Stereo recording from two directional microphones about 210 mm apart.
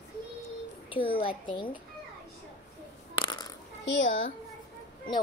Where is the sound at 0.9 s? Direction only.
25° left (ahead or behind).